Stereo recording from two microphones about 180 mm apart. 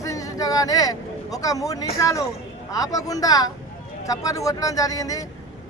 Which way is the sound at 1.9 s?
15° left (ahead or behind).